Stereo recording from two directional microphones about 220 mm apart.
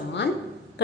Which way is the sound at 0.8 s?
50° left (ahead or behind).